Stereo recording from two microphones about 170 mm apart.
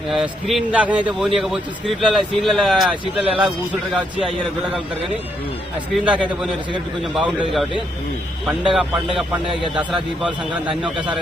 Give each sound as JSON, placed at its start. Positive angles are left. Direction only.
{"t": 0.1, "sound": "speech", "side_deg": 0}
{"t": 5.9, "sound": "a man's voice", "side_deg": -5}
{"t": 8.7, "sound": "a man's voice", "side_deg": -5}